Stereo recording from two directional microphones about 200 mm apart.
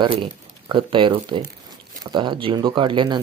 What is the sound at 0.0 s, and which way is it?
Speech, 25° right (ahead or behind).